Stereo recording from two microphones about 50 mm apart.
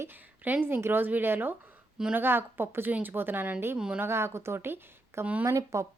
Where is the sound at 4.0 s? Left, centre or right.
Right.